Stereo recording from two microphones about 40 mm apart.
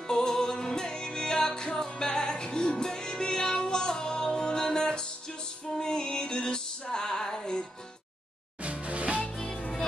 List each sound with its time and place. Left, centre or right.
0.1 s music: centre
8.6 s music: right